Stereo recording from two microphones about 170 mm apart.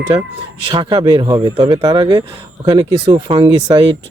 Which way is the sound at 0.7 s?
30° right (ahead or behind).